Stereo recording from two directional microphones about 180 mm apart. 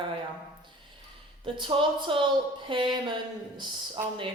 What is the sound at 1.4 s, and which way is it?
A woman's voice, 30° right (ahead or behind).